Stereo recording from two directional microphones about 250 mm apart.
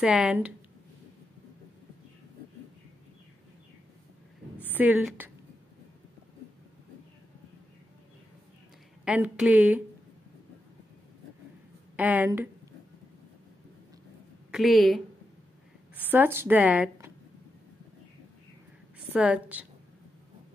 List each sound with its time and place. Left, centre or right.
0.0 s speech: centre
4.7 s a woman's voice: centre
9.0 s a woman's voice: centre
12.0 s a woman's voice: centre
14.5 s speech: centre
16.0 s a woman's voice: centre
18.9 s a woman's voice: centre